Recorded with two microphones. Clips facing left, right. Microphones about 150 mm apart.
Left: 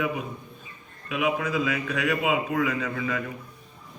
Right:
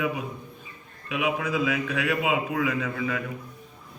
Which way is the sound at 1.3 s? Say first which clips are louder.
Even; 5° right (ahead or behind).